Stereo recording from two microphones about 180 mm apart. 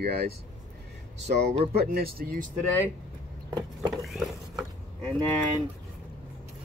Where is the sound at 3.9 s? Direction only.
Centre (ahead or behind).